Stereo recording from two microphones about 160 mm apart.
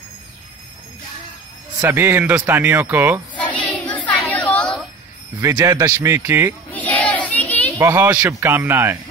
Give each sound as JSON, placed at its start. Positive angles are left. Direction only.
{"t": 1.8, "sound": "a man's voice", "side_deg": -15}
{"t": 3.6, "sound": "child singing", "side_deg": 10}
{"t": 5.4, "sound": "a man's voice", "side_deg": -20}
{"t": 6.7, "sound": "child singing", "side_deg": 10}
{"t": 7.8, "sound": "a man's voice", "side_deg": -15}